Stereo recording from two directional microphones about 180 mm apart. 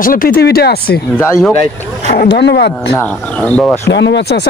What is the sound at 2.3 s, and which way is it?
Speech, 75° left (ahead or behind).